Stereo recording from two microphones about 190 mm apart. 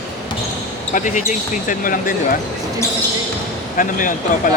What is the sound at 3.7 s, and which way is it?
Speech, 45° left (ahead or behind).